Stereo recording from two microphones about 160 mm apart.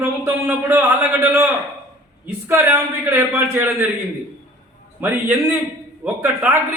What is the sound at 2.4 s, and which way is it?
A man's voice, 15° right (ahead or behind).